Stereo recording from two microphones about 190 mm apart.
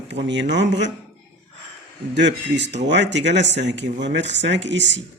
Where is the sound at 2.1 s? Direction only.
65° right (ahead or behind).